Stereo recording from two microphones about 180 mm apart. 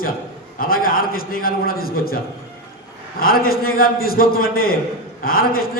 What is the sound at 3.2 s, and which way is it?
A man's voice, 55° left (ahead or behind).